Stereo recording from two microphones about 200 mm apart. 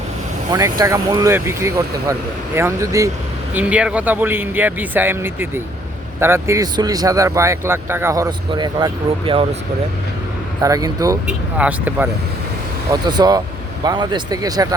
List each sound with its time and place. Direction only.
0.5 s speech: 15° right (ahead or behind)
10.6 s speech: 20° right (ahead or behind)
11.3 s speech: 5° right (ahead or behind)
12.9 s speech: 20° right (ahead or behind)